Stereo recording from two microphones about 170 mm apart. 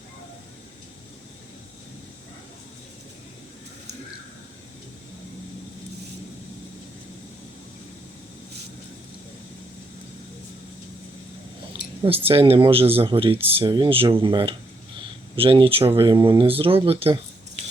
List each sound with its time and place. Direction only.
12.0 s speech: 35° right (ahead or behind)